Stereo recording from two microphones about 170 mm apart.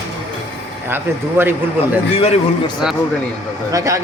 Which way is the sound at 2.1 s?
35° left (ahead or behind).